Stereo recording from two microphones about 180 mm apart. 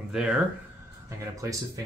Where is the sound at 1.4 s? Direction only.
15° right (ahead or behind).